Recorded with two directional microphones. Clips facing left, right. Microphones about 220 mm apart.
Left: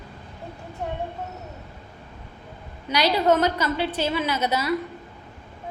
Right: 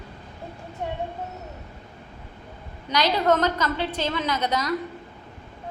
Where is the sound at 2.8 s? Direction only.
10° left (ahead or behind).